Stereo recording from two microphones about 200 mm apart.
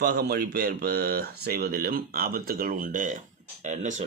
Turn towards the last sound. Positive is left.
turn(degrees=-35)  # may be behind; listen again after turning